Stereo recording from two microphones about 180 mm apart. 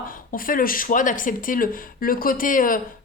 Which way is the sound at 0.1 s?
50° left (ahead or behind).